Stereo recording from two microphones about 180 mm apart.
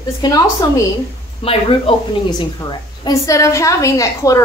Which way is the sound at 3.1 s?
15° left (ahead or behind).